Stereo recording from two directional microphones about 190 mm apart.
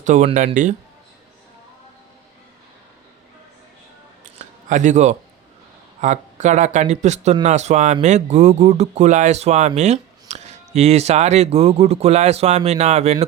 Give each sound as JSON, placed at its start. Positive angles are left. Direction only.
{"t": 0.0, "sound": "speech", "side_deg": -40}
{"t": 4.7, "sound": "speech", "side_deg": -40}